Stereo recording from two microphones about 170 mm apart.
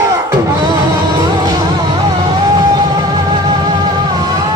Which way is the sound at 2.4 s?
20° right (ahead or behind).